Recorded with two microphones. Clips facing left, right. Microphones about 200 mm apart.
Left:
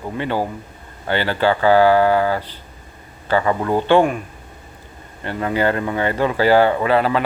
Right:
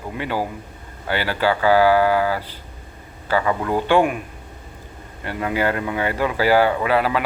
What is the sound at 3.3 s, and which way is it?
Speech, 25° left (ahead or behind).